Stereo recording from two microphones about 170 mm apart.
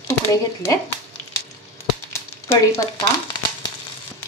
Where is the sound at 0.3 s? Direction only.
20° left (ahead or behind).